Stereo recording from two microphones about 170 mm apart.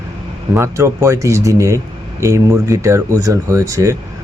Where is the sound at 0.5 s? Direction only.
15° right (ahead or behind).